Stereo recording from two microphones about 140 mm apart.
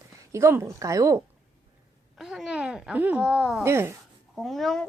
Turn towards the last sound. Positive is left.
turn(degrees=0)  # may be behind; listen again after turning